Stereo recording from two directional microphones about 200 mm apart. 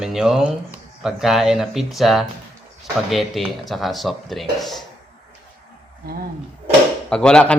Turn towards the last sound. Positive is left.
turn(degrees=5)  # may be behind; listen again after turning